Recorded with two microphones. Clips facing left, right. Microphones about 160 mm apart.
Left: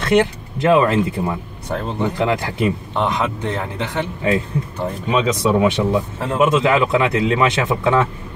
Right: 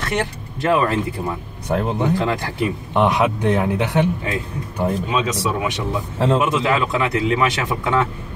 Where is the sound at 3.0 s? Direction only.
15° right (ahead or behind).